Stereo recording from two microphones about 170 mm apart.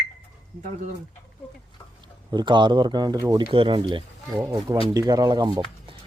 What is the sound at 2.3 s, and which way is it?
Speech, 25° right (ahead or behind).